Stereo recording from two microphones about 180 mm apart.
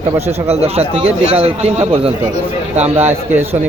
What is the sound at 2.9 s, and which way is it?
Speech, 10° right (ahead or behind).